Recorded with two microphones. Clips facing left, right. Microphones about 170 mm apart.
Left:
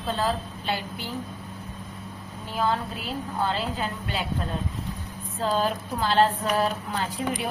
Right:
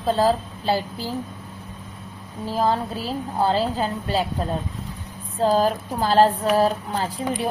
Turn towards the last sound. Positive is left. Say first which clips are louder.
# right 3 dB
turn(degrees=-35)  # may be behind; listen again after turning